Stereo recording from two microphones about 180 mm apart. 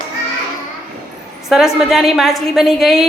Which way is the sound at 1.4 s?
Centre (ahead or behind).